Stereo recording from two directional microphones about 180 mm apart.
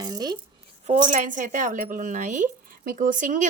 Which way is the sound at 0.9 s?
45° right (ahead or behind).